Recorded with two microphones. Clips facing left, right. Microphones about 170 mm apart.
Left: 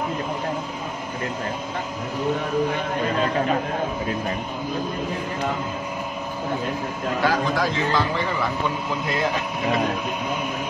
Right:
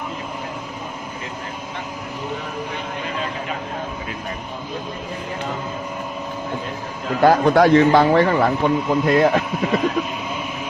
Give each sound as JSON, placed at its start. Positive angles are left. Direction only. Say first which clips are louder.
{"t": 7.2, "sound": "a man's voice", "louder": "right 9 dB", "side_deg": -60}